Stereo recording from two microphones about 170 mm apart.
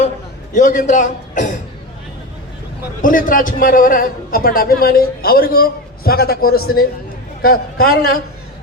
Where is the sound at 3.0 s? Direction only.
55° left (ahead or behind).